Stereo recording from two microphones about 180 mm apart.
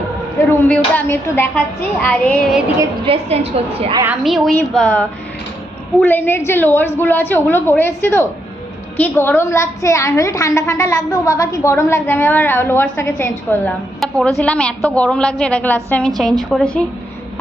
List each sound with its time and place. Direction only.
0.9 s a woman's voice: 10° left (ahead or behind)
3.1 s a woman's voice: 35° right (ahead or behind)
4.2 s a woman's voice: centre (ahead or behind)
14.0 s a woman's voice: centre (ahead or behind)